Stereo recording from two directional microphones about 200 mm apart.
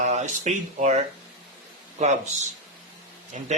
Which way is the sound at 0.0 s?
35° right (ahead or behind).